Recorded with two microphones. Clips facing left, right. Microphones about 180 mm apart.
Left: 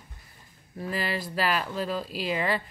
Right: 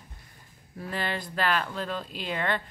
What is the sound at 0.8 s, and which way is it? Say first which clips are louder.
A woman's voice: left 2 dB; 5° left (ahead or behind).